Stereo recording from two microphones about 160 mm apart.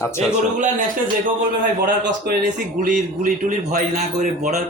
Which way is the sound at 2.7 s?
50° right (ahead or behind).